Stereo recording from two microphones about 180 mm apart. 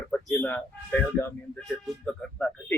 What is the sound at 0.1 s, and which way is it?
Speech, 10° left (ahead or behind).